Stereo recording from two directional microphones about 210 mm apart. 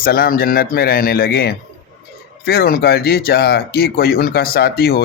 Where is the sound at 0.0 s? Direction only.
45° left (ahead or behind).